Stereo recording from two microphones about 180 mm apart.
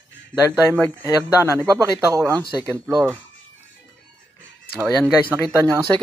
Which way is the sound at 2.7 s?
Centre (ahead or behind).